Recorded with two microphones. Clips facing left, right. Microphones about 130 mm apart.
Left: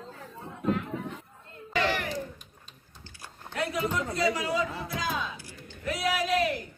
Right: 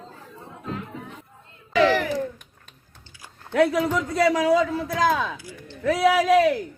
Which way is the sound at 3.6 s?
90° right.